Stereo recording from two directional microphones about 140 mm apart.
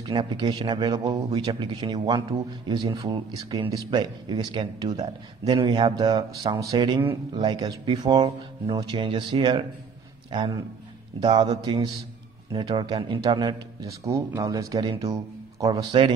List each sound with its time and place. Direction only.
0.0 s speech: 35° right (ahead or behind)
11.1 s a man's voice: 35° right (ahead or behind)